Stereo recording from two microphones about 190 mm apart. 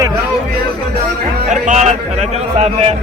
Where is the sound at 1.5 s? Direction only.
40° right (ahead or behind).